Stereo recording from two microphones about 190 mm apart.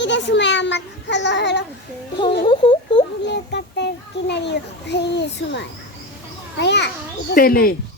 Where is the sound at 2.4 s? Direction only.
25° left (ahead or behind).